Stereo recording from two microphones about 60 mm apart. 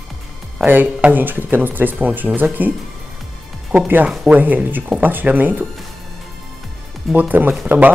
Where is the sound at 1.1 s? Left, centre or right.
Right.